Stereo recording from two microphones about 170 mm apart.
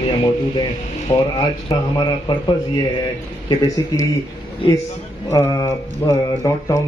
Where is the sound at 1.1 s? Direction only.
20° left (ahead or behind).